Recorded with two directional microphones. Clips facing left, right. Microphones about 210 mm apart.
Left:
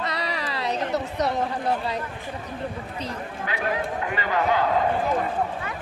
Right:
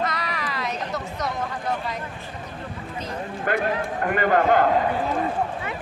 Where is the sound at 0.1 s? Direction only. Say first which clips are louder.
Left 1 dB; 35° left (ahead or behind).